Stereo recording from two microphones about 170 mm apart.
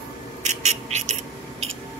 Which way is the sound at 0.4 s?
40° right (ahead or behind).